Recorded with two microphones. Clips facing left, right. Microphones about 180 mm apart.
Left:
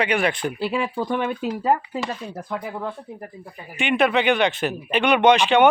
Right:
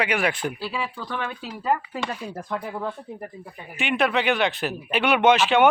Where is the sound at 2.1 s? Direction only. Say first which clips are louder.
Left 1 dB; 5° right (ahead or behind).